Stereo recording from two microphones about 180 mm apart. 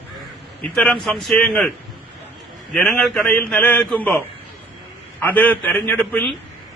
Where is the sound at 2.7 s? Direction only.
5° left (ahead or behind).